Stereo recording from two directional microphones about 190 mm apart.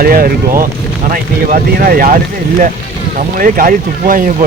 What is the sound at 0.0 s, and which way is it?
Speech, 50° right (ahead or behind).